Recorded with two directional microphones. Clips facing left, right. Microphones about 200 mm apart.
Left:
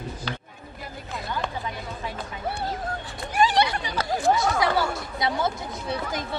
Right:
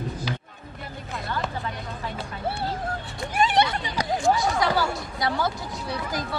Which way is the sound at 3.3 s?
25° right (ahead or behind).